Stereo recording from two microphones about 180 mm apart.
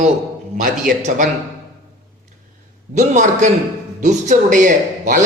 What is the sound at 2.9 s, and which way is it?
A man's voice, 40° right (ahead or behind).